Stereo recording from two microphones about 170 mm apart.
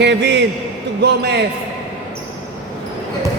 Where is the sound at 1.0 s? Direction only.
80° right.